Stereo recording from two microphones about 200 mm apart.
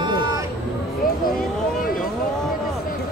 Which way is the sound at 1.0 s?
45° left (ahead or behind).